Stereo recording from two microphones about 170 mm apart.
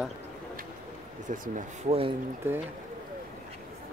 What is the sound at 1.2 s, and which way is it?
Speech, 50° right (ahead or behind).